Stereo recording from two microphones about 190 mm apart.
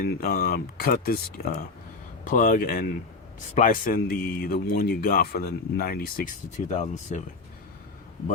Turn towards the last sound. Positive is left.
turn(degrees=40)  # may be behind; listen again after turning